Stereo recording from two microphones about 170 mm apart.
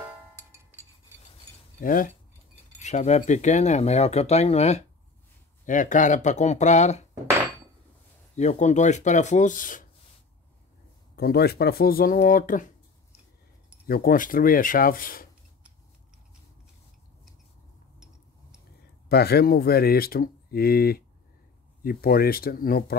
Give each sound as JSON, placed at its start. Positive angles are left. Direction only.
{"t": 0.0, "sound": "music", "side_deg": -15}
{"t": 1.8, "sound": "speech", "side_deg": 50}
{"t": 8.4, "sound": "speech", "side_deg": 40}
{"t": 11.1, "sound": "speech", "side_deg": 65}
{"t": 13.8, "sound": "speech", "side_deg": 60}
{"t": 19.0, "sound": "speech", "side_deg": 70}